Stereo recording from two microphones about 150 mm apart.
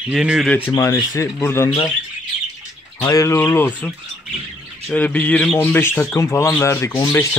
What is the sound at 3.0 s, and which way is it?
Speech, 20° left (ahead or behind).